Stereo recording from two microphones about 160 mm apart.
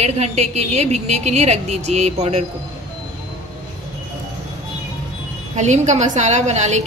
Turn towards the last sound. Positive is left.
turn(degrees=-45)  # may be behind; listen again after turning